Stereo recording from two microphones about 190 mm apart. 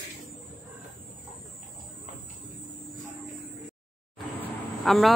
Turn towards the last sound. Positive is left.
turn(degrees=0)  # may be behind; listen again after turning